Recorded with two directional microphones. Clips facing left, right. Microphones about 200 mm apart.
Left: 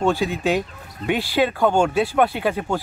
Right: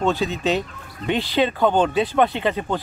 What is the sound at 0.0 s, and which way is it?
Speech, 10° left (ahead or behind).